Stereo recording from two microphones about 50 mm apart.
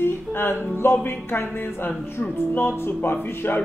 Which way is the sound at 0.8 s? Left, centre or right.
Left.